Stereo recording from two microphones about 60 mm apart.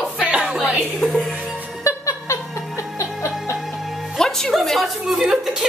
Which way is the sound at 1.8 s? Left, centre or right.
Left.